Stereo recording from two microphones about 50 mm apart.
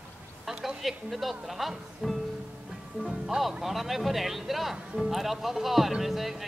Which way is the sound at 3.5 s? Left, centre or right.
Centre.